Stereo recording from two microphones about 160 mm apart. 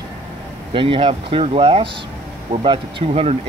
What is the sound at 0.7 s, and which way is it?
Speech, 35° right (ahead or behind).